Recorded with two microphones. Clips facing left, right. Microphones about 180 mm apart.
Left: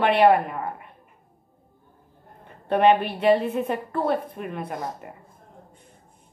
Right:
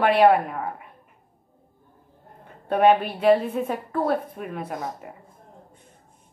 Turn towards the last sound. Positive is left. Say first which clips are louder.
# even
turn(degrees=0)  # may be behind; listen again after turning